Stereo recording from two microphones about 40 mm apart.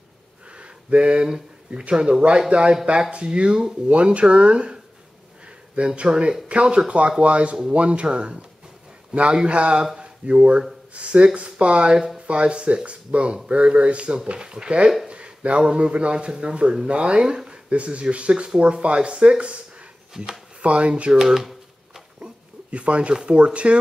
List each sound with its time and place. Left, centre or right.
0.5 s a sound: right
1.7 s speech: right
2.5 s speech: right
5.8 s speech: right
15.0 s a sound: right
15.6 s speech: right
21.2 s shuffling cards: centre
22.2 s speech: right